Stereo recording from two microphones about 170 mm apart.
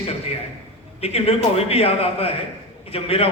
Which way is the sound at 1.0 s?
35° left (ahead or behind).